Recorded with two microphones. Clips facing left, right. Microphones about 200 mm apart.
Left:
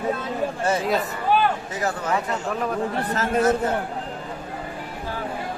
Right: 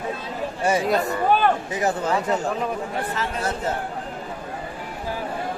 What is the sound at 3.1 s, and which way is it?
Speech, 45° left (ahead or behind).